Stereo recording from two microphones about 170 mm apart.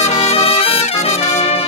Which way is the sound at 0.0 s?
40° left (ahead or behind).